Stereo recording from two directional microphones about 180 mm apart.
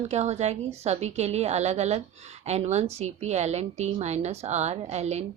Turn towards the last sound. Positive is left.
turn(degrees=-40)  # may be behind; listen again after turning